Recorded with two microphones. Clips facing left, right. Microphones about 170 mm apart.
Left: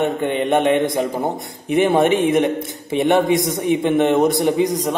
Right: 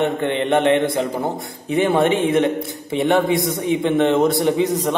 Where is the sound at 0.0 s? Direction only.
15° left (ahead or behind).